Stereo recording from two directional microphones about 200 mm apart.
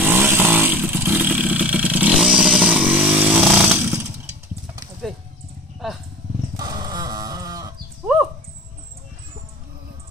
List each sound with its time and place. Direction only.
0.0 s vehicle: 10° right (ahead or behind)
5.8 s wild animals: centre (ahead or behind)
6.5 s dog: 20° right (ahead or behind)